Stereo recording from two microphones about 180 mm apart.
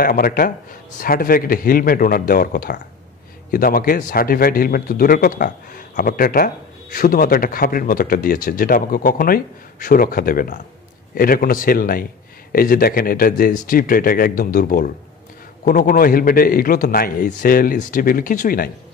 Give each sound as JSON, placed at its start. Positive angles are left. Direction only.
{"t": 0.0, "sound": "a man's voice", "side_deg": 55}